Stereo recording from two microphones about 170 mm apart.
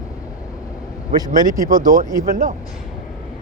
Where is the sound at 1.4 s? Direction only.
50° right (ahead or behind).